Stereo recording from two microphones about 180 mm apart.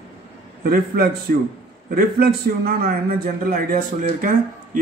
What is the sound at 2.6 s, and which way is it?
Speech, 55° right (ahead or behind).